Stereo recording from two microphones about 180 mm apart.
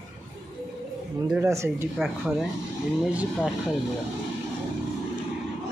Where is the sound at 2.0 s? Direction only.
Centre (ahead or behind).